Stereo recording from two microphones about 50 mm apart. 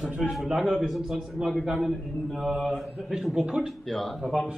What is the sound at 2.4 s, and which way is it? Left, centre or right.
Mantra, centre.